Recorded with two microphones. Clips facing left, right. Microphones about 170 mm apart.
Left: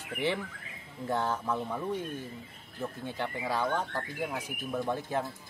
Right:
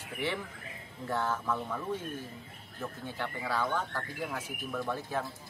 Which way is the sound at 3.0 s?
20° left (ahead or behind).